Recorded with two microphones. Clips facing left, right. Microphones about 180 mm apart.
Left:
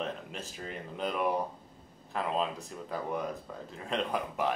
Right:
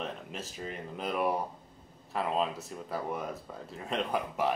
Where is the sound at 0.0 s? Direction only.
Centre (ahead or behind).